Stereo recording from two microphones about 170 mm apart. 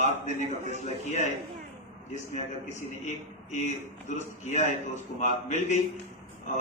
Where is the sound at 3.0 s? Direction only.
45° left (ahead or behind).